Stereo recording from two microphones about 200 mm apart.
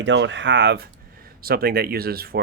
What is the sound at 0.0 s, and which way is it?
Speech, 65° right (ahead or behind).